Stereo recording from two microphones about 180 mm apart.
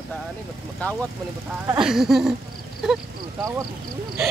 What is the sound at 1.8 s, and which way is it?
Speech, centre (ahead or behind).